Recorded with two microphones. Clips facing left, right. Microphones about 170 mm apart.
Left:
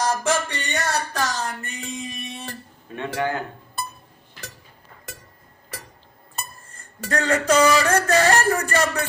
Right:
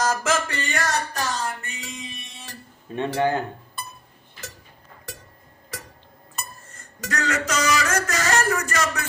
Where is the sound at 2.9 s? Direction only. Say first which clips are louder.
Right 5 dB; 30° right (ahead or behind).